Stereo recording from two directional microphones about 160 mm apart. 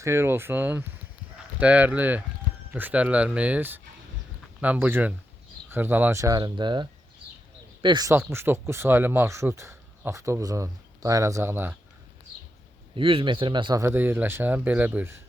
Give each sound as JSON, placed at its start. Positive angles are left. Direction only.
{"t": 0.0, "sound": "speech", "side_deg": -15}
{"t": 8.1, "sound": "speech", "side_deg": -15}
{"t": 13.0, "sound": "speech", "side_deg": -35}
{"t": 13.8, "sound": "speech", "side_deg": -15}